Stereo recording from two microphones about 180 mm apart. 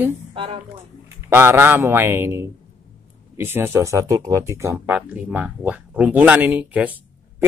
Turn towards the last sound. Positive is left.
turn(degrees=-10)  # may be behind; listen again after turning